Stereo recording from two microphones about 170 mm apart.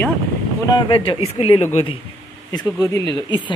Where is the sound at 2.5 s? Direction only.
20° left (ahead or behind).